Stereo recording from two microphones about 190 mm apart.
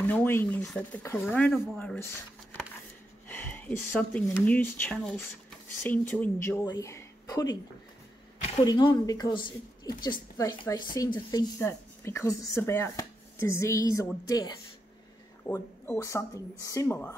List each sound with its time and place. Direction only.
0.0 s speech: 10° left (ahead or behind)
3.3 s speech: 10° left (ahead or behind)
8.6 s a woman's voice: 20° left (ahead or behind)